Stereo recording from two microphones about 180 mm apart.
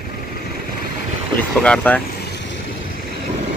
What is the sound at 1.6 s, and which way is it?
Speech, 5° left (ahead or behind).